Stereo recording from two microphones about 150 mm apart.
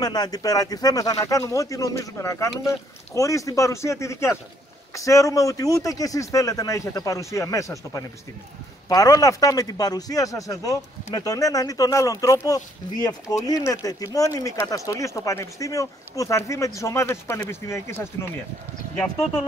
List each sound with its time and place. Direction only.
0.0 s speech: 25° left (ahead or behind)